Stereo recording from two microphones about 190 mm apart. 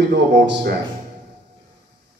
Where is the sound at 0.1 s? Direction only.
60° right (ahead or behind).